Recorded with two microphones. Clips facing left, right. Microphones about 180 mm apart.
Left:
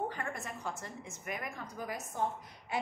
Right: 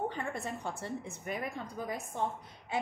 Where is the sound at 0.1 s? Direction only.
30° right (ahead or behind).